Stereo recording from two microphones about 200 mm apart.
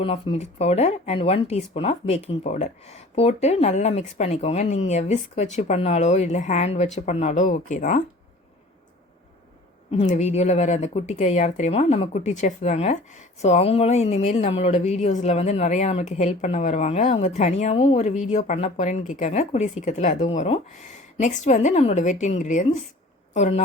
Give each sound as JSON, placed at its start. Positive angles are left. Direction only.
{"t": 0.0, "sound": "speech", "side_deg": 30}
{"t": 9.9, "sound": "speech", "side_deg": 35}